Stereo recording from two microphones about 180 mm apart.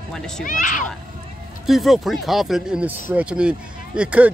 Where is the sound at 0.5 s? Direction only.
45° left (ahead or behind).